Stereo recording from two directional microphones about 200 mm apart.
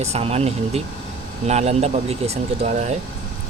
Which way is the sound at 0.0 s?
30° right (ahead or behind).